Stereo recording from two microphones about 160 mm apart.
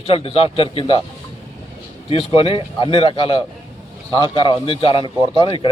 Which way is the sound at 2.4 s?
35° left (ahead or behind).